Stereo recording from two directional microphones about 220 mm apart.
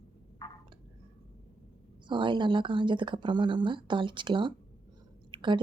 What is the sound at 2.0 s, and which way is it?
Speech, 20° right (ahead or behind).